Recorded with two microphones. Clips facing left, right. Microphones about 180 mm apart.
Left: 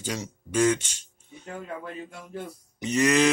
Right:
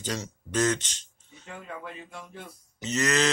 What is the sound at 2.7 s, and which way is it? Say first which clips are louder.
Speech: left 5 dB; 10° left (ahead or behind).